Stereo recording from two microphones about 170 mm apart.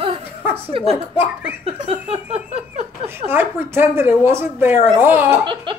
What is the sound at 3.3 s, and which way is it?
A woman's voice, 15° right (ahead or behind).